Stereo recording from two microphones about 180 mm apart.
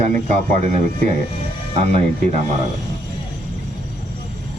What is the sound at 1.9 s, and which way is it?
Speech, 35° right (ahead or behind).